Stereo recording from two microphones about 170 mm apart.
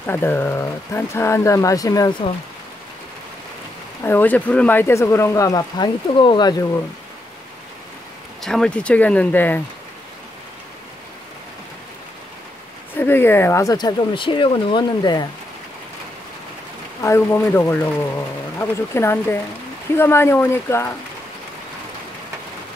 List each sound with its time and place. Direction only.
0.0 s speech: 10° left (ahead or behind)
4.0 s speech: 10° left (ahead or behind); by 6.5 s 30° left (ahead or behind)
8.4 s speech: 5° left (ahead or behind)
12.9 s speech: 10° left (ahead or behind)
17.0 s speech: 15° left (ahead or behind)